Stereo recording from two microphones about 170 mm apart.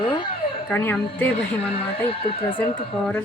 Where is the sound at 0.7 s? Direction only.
10° left (ahead or behind).